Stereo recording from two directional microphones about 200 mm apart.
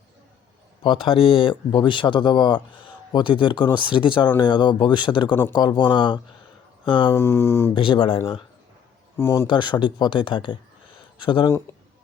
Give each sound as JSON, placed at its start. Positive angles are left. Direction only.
{"t": 0.8, "sound": "speech", "side_deg": 25}
{"t": 7.1, "sound": "speech", "side_deg": 10}
{"t": 7.7, "sound": "speech", "side_deg": 25}
{"t": 9.1, "sound": "speech", "side_deg": 10}